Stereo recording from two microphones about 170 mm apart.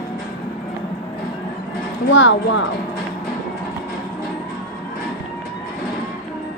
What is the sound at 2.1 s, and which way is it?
Speech, 90° left.